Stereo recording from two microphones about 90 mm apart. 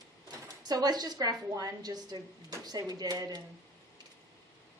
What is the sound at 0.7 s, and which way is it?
A woman's voice, 50° right (ahead or behind).